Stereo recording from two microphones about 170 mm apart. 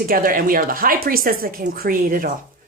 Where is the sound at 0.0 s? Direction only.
55° right (ahead or behind).